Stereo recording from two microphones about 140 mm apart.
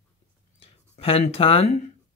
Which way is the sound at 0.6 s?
45° left (ahead or behind).